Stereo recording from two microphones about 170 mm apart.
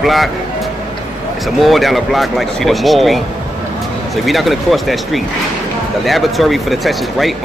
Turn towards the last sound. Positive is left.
turn(degrees=0)  # may be behind; listen again after turning